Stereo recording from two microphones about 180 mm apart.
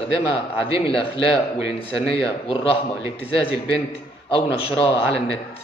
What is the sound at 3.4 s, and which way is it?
Speech, 30° left (ahead or behind).